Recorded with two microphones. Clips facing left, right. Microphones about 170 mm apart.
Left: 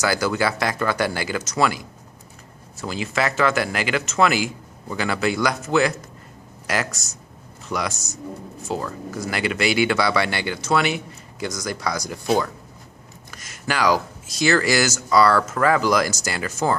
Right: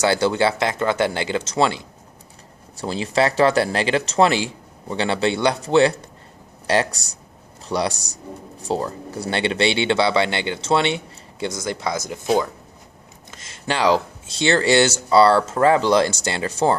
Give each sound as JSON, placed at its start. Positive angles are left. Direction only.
{"t": 0.0, "sound": "speech", "side_deg": -30}